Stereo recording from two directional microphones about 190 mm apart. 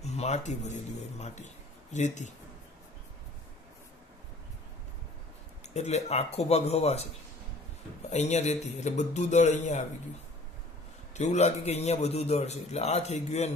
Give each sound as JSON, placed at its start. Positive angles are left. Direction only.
{"t": 0.0, "sound": "speech", "side_deg": 35}
{"t": 5.7, "sound": "a man's voice", "side_deg": 35}
{"t": 8.1, "sound": "a man's voice", "side_deg": 35}
{"t": 11.1, "sound": "a man's voice", "side_deg": 40}